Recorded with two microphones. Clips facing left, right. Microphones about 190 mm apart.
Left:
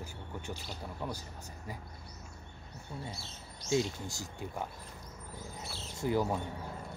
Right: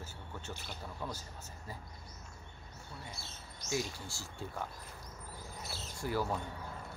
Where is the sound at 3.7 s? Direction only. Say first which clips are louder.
Left 6 dB; 20° left (ahead or behind).